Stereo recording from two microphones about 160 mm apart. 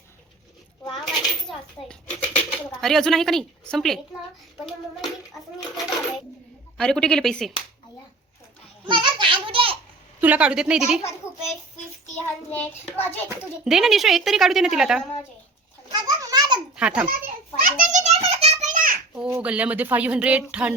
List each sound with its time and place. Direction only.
0.9 s a sound: centre (ahead or behind)
2.8 s a woman's voice: 5° left (ahead or behind)
8.9 s children playing: 30° right (ahead or behind)
10.2 s a woman's voice: 10° right (ahead or behind)
12.5 s child singing: 10° left (ahead or behind)
13.7 s a woman's voice: 5° right (ahead or behind)
15.9 s children playing: 25° right (ahead or behind)
16.7 s a child's voice: 5° right (ahead or behind)
17.6 s a sound: 50° right (ahead or behind)
19.3 s speech: 10° right (ahead or behind)